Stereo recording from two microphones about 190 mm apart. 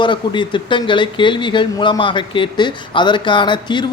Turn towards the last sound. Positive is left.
turn(degrees=25)  # may be behind; listen again after turning